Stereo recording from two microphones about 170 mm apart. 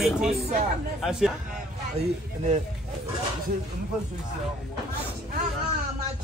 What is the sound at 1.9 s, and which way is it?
Speech, 40° right (ahead or behind).